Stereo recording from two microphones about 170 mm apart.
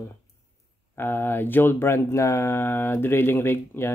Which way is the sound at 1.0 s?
15° left (ahead or behind).